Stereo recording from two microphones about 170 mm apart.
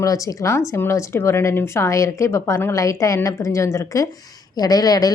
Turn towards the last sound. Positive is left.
turn(degrees=20)  # may be behind; listen again after turning